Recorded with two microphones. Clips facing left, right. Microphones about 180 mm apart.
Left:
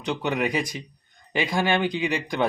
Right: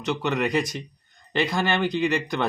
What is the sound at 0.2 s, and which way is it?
Speech, 15° left (ahead or behind).